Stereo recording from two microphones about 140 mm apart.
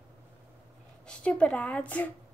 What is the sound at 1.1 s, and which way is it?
A woman's voice, 10° left (ahead or behind).